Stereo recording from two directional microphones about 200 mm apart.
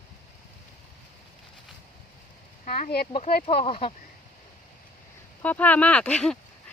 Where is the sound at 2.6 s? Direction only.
50° left (ahead or behind).